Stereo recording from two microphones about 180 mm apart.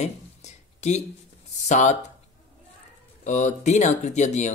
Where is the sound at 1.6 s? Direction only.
40° left (ahead or behind).